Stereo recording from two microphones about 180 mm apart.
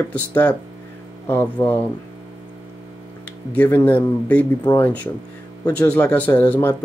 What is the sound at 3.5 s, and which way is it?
Speech, 10° left (ahead or behind).